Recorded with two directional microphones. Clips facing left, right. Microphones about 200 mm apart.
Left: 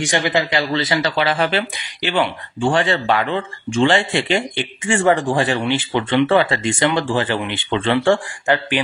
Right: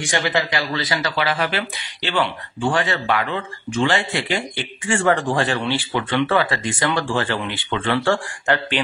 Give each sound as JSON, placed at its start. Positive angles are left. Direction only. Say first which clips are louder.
{"t": 0.0, "sound": "speech", "louder": "left 3 dB", "side_deg": 20}
{"t": 2.0, "sound": "speech", "louder": "left 3 dB", "side_deg": 15}
{"t": 2.6, "sound": "speech", "louder": "left 4 dB", "side_deg": 25}